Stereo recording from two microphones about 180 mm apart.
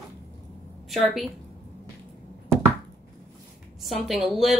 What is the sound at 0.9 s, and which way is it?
Speech, centre (ahead or behind).